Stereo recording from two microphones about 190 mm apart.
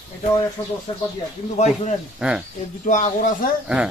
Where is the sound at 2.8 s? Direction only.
40° left (ahead or behind).